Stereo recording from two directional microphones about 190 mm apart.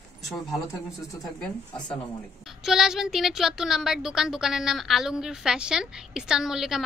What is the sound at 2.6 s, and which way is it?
Speech, centre (ahead or behind).